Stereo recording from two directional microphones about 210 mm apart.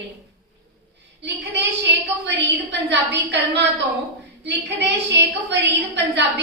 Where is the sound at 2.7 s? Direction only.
55° right (ahead or behind).